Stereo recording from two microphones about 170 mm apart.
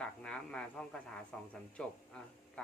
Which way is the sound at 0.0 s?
5° left (ahead or behind).